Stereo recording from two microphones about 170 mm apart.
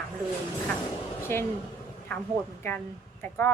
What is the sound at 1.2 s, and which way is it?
Speech, 15° left (ahead or behind).